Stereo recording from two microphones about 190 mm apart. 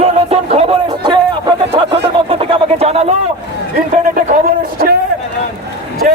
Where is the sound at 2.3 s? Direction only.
30° right (ahead or behind); by 4.9 s 50° right (ahead or behind).